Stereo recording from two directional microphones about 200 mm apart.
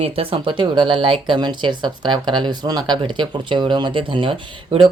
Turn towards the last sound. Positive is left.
turn(degrees=-25)  # may be behind; listen again after turning